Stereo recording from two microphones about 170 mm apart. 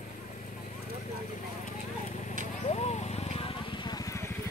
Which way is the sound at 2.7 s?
40° left (ahead or behind).